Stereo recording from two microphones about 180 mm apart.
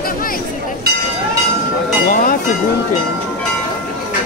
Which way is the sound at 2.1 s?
50° left (ahead or behind).